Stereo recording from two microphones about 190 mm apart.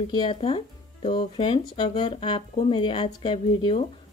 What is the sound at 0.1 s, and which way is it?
Speech, 25° left (ahead or behind).